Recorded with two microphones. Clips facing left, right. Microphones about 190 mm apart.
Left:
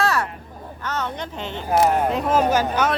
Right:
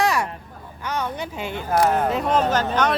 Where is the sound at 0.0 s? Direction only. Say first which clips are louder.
Right 1 dB; 15° right (ahead or behind).